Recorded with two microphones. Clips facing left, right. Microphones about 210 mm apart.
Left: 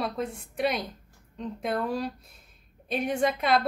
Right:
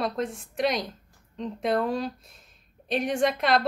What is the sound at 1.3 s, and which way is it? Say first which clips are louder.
Speech: right 4 dB; 5° left (ahead or behind).